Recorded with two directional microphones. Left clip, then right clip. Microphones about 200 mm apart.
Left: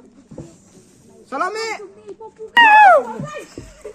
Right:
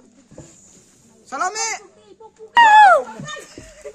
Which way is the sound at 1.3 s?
15° right (ahead or behind).